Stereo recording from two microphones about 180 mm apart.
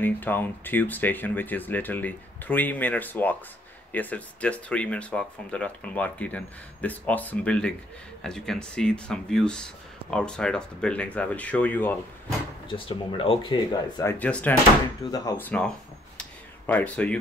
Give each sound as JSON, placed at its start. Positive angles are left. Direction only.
{"t": 0.0, "sound": "speech", "side_deg": 10}
{"t": 12.6, "sound": "speech", "side_deg": 30}
{"t": 14.1, "sound": "speech", "side_deg": 10}
{"t": 15.0, "sound": "speech", "side_deg": 20}
{"t": 16.2, "sound": "a sound", "side_deg": 10}